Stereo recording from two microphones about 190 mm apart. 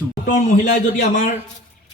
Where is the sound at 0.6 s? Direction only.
65° left (ahead or behind).